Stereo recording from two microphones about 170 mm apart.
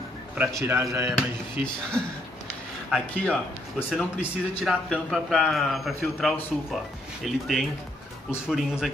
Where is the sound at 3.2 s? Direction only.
5° left (ahead or behind).